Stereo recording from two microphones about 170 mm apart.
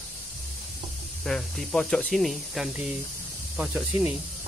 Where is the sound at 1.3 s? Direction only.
Centre (ahead or behind).